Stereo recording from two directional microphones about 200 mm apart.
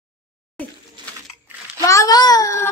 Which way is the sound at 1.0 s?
20° right (ahead or behind).